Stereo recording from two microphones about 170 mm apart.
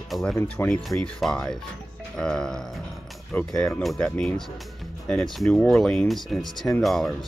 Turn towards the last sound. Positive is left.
turn(degrees=0)  # may be behind; listen again after turning